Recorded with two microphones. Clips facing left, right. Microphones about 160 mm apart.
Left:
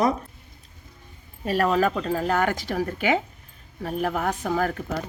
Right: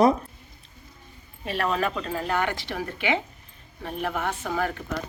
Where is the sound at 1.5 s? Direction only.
40° left (ahead or behind).